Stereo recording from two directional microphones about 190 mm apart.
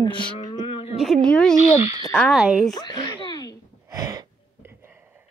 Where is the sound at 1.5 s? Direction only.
35° left (ahead or behind).